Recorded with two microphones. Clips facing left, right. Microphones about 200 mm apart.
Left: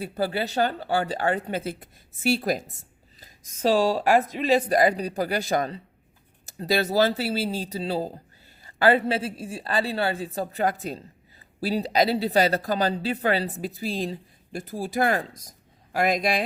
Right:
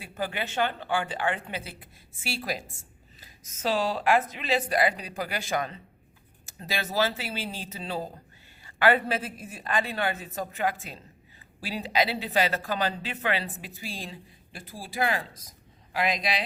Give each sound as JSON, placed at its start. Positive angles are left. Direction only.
{"t": 0.0, "sound": "a woman's voice", "side_deg": 35}